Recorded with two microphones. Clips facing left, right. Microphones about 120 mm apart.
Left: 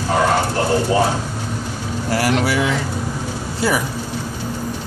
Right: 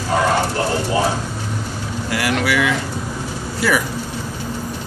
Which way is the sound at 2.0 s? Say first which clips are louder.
Left 2 dB; 35° left (ahead or behind).